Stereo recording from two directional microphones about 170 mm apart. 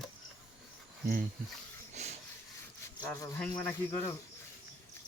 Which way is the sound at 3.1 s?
15° left (ahead or behind).